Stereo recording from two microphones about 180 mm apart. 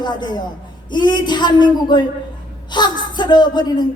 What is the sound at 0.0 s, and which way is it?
A man's voice, 25° left (ahead or behind).